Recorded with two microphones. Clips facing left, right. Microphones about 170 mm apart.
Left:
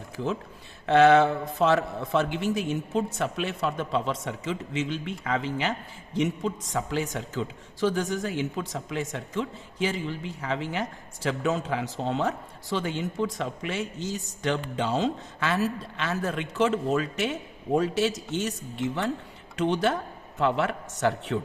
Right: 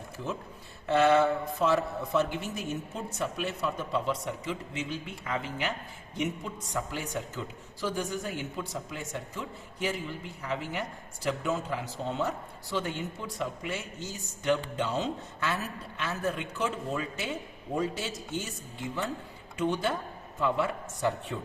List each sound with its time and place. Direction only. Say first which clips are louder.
0.9 s a man's voice: left 5 dB; 90° left